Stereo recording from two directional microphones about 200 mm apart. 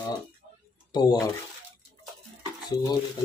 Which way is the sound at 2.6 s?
20° left (ahead or behind).